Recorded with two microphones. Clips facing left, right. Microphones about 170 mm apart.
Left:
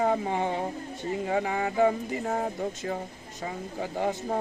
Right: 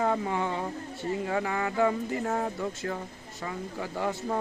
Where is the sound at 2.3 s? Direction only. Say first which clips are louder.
Left 1 dB; 35° left (ahead or behind).